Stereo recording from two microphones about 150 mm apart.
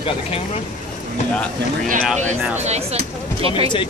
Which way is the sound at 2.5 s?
45° right (ahead or behind).